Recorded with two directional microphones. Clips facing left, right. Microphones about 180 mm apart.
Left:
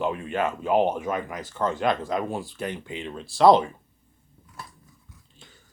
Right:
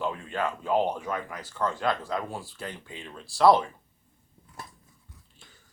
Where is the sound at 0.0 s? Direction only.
20° left (ahead or behind).